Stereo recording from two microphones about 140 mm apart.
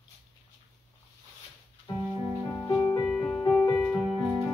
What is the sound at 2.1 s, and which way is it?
Music, 30° left (ahead or behind).